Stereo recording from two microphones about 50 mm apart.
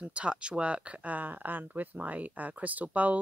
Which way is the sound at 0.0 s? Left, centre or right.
Right.